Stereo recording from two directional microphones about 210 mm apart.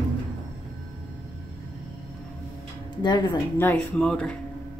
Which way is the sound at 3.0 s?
20° left (ahead or behind).